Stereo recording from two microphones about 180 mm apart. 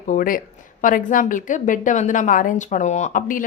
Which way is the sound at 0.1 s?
50° left (ahead or behind).